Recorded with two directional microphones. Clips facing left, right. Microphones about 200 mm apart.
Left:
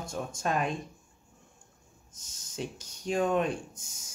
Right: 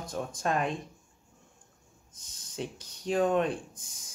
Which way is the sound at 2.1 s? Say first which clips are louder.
Right 1 dB; 30° right (ahead or behind).